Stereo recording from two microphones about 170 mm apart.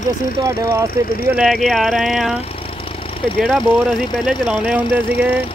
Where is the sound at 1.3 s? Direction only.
Centre (ahead or behind).